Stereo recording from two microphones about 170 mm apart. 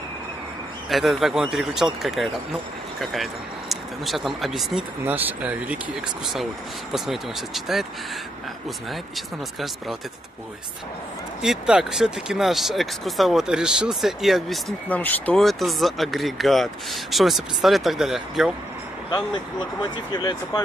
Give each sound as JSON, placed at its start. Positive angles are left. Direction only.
{"t": 0.8, "sound": "speech", "side_deg": 0}
{"t": 9.1, "sound": "speech", "side_deg": 0}
{"t": 11.4, "sound": "speech", "side_deg": -5}
{"t": 19.8, "sound": "speech", "side_deg": 25}